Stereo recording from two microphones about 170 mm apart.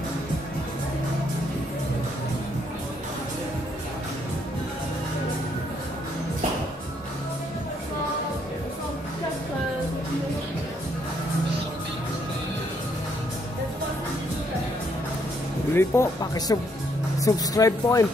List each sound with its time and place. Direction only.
15.7 s speech: 15° left (ahead or behind)